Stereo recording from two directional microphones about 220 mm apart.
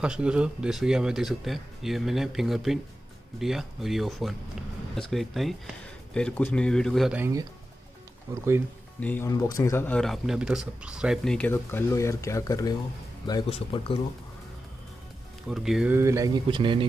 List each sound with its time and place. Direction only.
0.0 s speech: 5° right (ahead or behind)
9.0 s speech: 10° left (ahead or behind)
15.4 s speech: centre (ahead or behind); by 16.8 s 20° right (ahead or behind)